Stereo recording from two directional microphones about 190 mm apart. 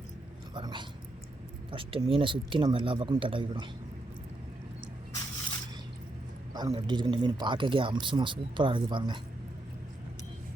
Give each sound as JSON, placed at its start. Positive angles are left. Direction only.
{"t": 0.5, "sound": "speech", "side_deg": -25}
{"t": 6.5, "sound": "speech", "side_deg": -20}